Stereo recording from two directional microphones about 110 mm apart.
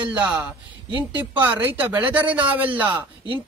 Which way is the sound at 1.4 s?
15° right (ahead or behind).